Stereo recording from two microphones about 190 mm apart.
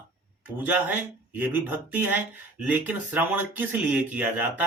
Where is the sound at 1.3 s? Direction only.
10° right (ahead or behind).